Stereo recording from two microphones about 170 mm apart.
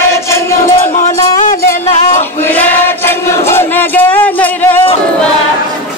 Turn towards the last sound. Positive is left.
turn(degrees=10)  # may be behind; listen again after turning